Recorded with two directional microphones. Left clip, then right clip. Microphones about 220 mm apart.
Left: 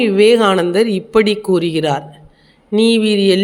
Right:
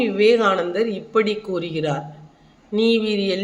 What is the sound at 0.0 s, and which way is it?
Speech, 45° left (ahead or behind).